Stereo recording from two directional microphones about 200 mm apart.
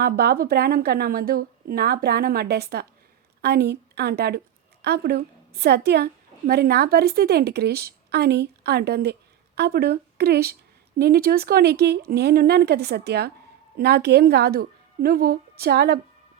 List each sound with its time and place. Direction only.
0.0 s a woman's voice: 50° right (ahead or behind)